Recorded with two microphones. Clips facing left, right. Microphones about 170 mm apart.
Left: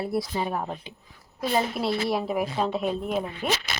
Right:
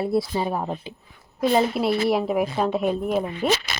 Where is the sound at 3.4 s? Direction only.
30° right (ahead or behind).